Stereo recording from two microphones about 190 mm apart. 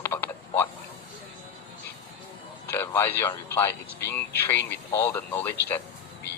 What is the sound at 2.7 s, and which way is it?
A man's voice, 10° left (ahead or behind).